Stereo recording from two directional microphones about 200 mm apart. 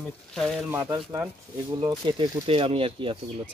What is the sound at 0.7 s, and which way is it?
Speech, 15° right (ahead or behind).